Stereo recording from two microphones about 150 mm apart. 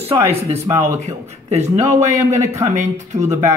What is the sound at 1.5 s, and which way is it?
Speech, 50° right (ahead or behind).